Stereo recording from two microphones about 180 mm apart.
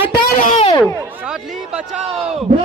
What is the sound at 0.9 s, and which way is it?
Speech, 10° right (ahead or behind).